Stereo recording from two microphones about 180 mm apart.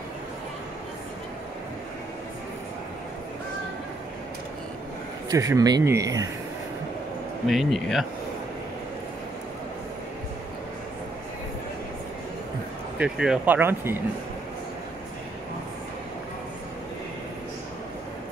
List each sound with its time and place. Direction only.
5.3 s speech: 20° right (ahead or behind)
7.4 s speech: centre (ahead or behind)
13.0 s speech: 5° right (ahead or behind)